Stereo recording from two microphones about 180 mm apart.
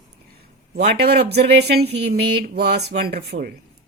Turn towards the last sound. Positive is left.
turn(degrees=-60)  # may be behind; listen again after turning